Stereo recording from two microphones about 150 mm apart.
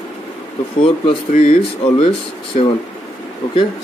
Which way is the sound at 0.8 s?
40° left (ahead or behind).